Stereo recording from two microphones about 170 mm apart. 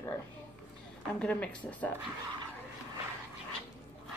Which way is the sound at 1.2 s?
10° left (ahead or behind).